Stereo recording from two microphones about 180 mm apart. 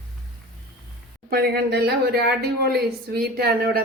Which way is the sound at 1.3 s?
60° right (ahead or behind).